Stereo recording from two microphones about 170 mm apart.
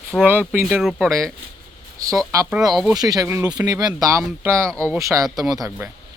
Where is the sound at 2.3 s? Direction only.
20° right (ahead or behind).